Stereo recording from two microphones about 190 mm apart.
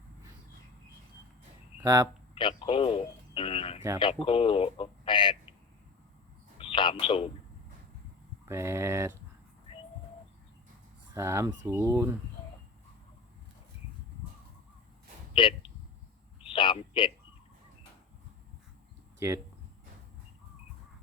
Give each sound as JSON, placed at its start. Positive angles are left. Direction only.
{"t": 1.8, "sound": "speech", "side_deg": -20}
{"t": 2.3, "sound": "radio", "side_deg": 25}
{"t": 4.0, "sound": "speech", "side_deg": 30}
{"t": 6.6, "sound": "telephone", "side_deg": 25}
{"t": 8.4, "sound": "speech", "side_deg": -15}
{"t": 11.1, "sound": "speech", "side_deg": -15}
{"t": 15.3, "sound": "speech", "side_deg": 25}
{"t": 16.5, "sound": "a sound", "side_deg": 25}
{"t": 19.2, "sound": "speech", "side_deg": -15}